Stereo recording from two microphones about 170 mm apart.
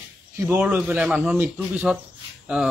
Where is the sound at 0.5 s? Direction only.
10° right (ahead or behind).